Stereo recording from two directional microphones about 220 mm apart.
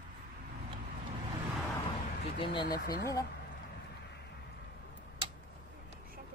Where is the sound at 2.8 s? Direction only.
45° left (ahead or behind).